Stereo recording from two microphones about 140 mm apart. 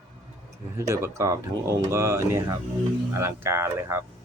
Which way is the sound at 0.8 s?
20° right (ahead or behind).